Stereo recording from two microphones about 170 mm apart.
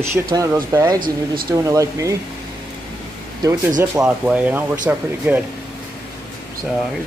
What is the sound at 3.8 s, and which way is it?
Speech, 10° right (ahead or behind).